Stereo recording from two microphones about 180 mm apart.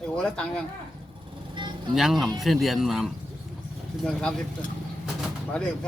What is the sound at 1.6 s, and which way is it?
Vehicle, 25° right (ahead or behind).